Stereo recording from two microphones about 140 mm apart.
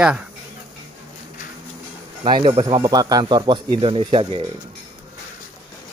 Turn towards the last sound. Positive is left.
turn(degrees=-40)  # may be behind; listen again after turning